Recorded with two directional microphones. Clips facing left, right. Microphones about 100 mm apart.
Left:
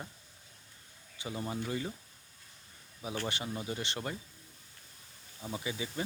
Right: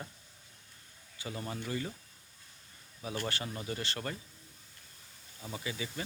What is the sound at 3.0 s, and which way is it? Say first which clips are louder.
Speech: even; 20° left (ahead or behind).